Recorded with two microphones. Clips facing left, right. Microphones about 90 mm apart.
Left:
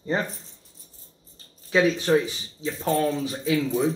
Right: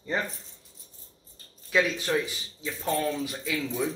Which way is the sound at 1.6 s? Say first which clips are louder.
Left 5 dB; 25° left (ahead or behind).